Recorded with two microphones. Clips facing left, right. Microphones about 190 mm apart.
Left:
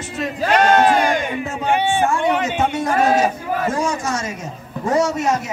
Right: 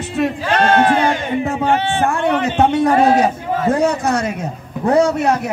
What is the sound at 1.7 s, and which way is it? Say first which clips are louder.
Speech: left 2 dB; 15° left (ahead or behind).